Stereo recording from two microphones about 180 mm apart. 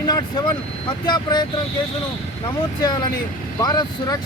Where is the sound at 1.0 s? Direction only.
25° left (ahead or behind).